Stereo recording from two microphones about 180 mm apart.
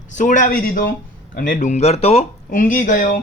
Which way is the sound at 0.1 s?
45° left (ahead or behind).